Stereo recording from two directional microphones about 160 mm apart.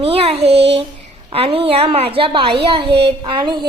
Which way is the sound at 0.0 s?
35° right (ahead or behind).